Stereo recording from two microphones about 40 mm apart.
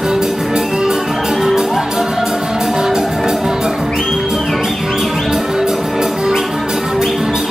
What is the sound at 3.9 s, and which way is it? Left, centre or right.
Music, centre.